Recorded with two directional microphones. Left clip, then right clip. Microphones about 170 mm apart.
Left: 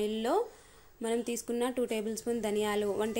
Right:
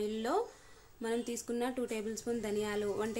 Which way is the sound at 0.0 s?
20° left (ahead or behind).